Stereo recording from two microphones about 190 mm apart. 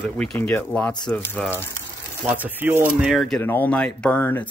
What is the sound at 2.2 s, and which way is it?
Speech, 10° right (ahead or behind).